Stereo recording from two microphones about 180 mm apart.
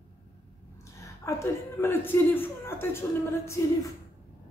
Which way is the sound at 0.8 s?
15° left (ahead or behind).